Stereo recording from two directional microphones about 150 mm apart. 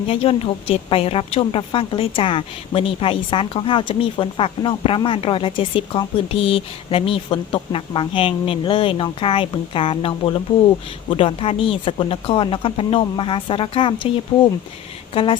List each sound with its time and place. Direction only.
0.1 s a woman's voice: 40° left (ahead or behind)
15.1 s speech: 35° left (ahead or behind)